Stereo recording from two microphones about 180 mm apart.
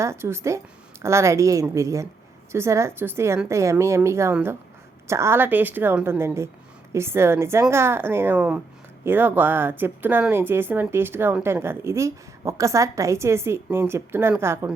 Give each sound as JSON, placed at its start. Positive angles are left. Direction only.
{"t": 0.0, "sound": "speech", "side_deg": -15}